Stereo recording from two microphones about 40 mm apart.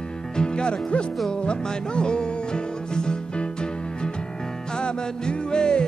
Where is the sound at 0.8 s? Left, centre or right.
Left.